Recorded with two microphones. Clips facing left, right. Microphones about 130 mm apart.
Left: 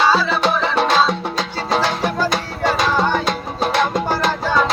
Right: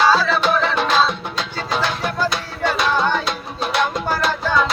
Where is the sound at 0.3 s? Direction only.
30° left (ahead or behind).